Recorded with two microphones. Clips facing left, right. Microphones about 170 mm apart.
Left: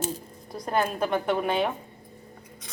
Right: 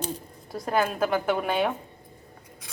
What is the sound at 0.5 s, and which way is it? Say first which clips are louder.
Speech: right 1 dB; 5° right (ahead or behind).